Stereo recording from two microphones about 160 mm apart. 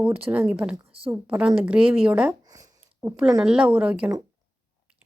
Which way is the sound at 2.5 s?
25° right (ahead or behind).